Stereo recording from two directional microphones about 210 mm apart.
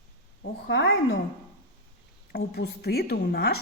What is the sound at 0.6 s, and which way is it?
Speech, 60° left (ahead or behind).